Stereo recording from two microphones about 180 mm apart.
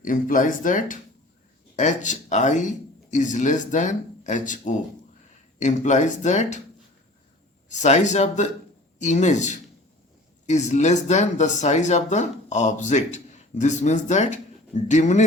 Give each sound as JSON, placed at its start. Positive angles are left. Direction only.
{"t": 0.0, "sound": "speech", "side_deg": 45}
{"t": 7.7, "sound": "speech", "side_deg": 40}